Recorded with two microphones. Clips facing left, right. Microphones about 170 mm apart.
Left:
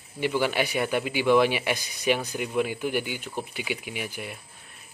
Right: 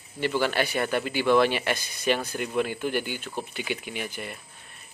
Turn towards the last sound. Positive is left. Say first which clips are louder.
# even
turn(degrees=5)  # may be behind; listen again after turning